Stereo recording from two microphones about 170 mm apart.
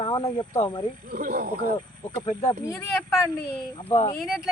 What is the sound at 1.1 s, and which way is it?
Speech, 55° right (ahead or behind).